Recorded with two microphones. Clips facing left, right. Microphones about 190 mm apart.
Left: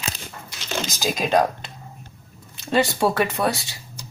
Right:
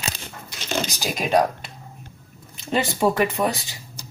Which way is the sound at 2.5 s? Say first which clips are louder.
Left 3 dB; 15° right (ahead or behind).